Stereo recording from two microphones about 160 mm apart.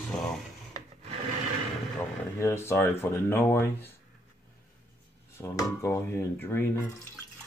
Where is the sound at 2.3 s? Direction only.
15° left (ahead or behind).